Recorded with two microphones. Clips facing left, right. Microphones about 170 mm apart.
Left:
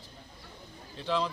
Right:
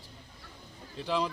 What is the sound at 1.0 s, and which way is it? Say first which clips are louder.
Speech: even; 10° right (ahead or behind).